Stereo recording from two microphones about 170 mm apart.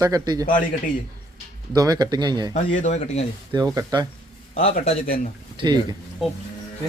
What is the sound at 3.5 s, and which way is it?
Speech, 20° right (ahead or behind).